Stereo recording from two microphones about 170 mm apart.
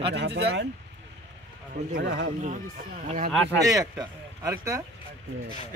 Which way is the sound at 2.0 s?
80° right.